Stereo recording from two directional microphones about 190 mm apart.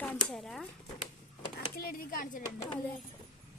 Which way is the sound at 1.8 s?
50° left (ahead or behind).